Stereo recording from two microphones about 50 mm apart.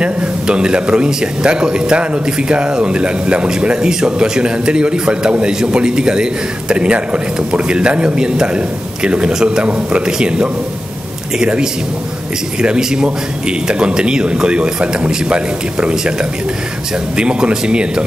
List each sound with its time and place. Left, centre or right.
0.0 s a man's voice: centre